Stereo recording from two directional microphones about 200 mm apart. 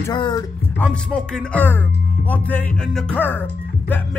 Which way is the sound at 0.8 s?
5° left (ahead or behind).